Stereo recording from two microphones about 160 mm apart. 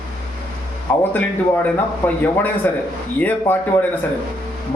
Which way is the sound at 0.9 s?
10° left (ahead or behind).